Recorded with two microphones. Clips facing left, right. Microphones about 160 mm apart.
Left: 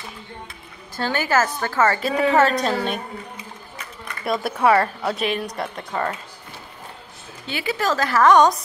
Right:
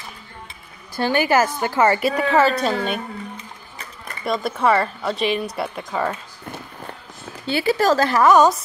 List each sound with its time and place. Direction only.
0.9 s a woman's voice: 15° right (ahead or behind)
4.2 s speech: 5° left (ahead or behind)
7.4 s speech: 35° right (ahead or behind)
8.1 s a woman's voice: 10° right (ahead or behind)